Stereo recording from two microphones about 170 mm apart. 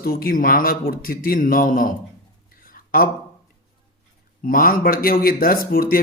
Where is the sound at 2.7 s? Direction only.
55° left (ahead or behind).